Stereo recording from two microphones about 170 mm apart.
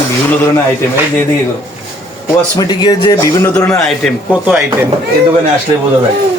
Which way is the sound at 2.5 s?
25° left (ahead or behind).